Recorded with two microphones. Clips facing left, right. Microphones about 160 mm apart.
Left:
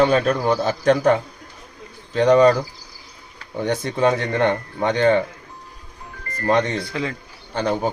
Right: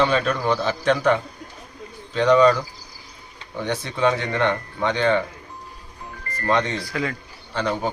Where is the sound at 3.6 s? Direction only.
45° left (ahead or behind).